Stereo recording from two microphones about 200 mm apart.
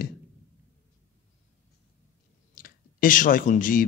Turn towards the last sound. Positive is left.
turn(degrees=45)  # may be behind; listen again after turning